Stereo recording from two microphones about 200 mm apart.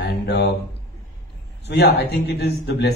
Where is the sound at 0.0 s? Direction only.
60° left (ahead or behind).